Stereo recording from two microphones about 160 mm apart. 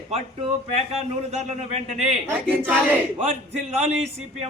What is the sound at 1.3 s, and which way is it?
Speech, 45° right (ahead or behind).